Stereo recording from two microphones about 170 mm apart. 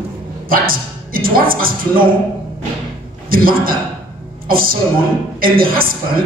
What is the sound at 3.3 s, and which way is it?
A woman's voice, 60° right (ahead or behind).